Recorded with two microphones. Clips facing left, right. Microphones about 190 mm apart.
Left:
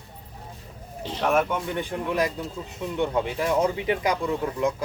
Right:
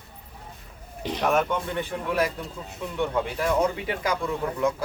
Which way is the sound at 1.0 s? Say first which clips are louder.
Right 1 dB; 15° right (ahead or behind).